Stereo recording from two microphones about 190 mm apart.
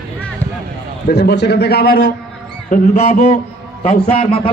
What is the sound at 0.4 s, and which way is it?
Basketball bounce, 10° left (ahead or behind).